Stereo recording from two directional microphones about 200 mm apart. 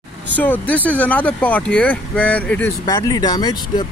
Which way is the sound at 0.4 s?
10° left (ahead or behind).